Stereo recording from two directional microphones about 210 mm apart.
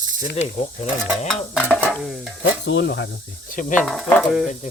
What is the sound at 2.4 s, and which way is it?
Sizzle, 55° left (ahead or behind).